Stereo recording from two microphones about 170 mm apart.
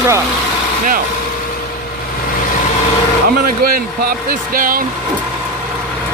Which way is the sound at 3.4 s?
60° right (ahead or behind).